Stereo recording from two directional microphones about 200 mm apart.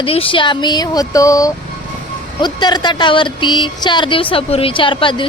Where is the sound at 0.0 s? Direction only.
25° left (ahead or behind).